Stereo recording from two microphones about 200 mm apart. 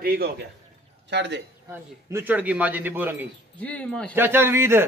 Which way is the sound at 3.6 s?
5° left (ahead or behind).